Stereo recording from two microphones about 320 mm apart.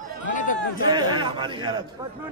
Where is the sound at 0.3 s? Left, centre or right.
Left.